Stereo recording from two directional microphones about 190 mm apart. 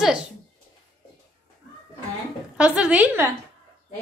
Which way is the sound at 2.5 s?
5° right (ahead or behind).